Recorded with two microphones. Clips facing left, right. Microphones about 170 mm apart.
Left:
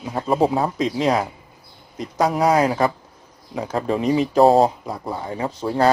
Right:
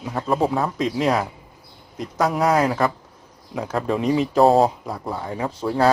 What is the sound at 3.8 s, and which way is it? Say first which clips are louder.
Speech: left 1 dB; centre (ahead or behind).